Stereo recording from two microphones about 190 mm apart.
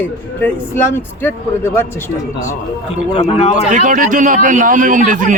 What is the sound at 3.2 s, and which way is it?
Speech, 35° left (ahead or behind).